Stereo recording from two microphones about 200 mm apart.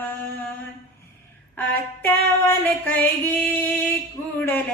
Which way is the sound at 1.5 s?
10° left (ahead or behind).